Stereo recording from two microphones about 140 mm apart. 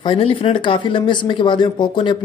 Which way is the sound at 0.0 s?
40° left (ahead or behind).